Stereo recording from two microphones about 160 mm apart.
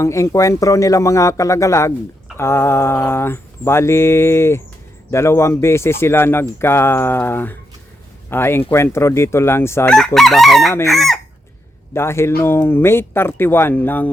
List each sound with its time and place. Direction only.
0.0 s speech: 20° left (ahead or behind)
2.4 s mantra: 15° left (ahead or behind)
10.2 s chicken: centre (ahead or behind)
11.9 s mantra: 15° left (ahead or behind)